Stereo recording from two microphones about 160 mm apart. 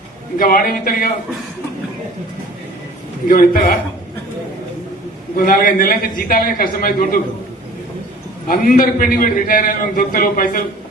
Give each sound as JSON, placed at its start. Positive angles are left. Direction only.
{"t": 0.3, "sound": "a man's voice", "side_deg": 65}
{"t": 3.2, "sound": "a man's voice", "side_deg": 60}
{"t": 5.4, "sound": "a man's voice", "side_deg": 60}
{"t": 8.4, "sound": "a man's voice", "side_deg": 60}